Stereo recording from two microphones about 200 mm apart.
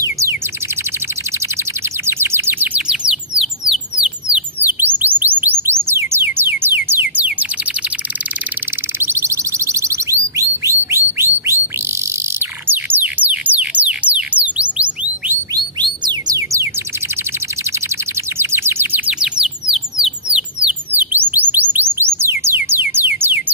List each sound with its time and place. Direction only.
0.0 s bird: 15° right (ahead or behind)
1.6 s bird: 10° right (ahead or behind)
5.9 s music: 10° right (ahead or behind)
9.0 s a sound: 15° right (ahead or behind)
11.4 s bird: 15° right (ahead or behind)
15.5 s bird: 20° right (ahead or behind)
18.4 s bird: 10° right (ahead or behind)
21.7 s music: 10° right (ahead or behind)